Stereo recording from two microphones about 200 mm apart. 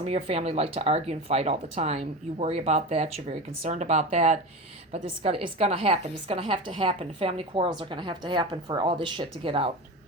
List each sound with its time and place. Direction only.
0.0 s a woman's voice: 30° right (ahead or behind)